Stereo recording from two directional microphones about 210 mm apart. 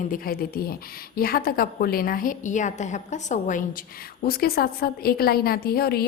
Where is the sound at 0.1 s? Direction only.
45° left (ahead or behind).